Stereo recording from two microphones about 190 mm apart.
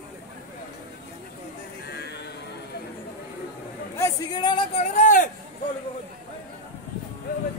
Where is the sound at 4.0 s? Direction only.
20° left (ahead or behind); by 5.3 s 45° left (ahead or behind).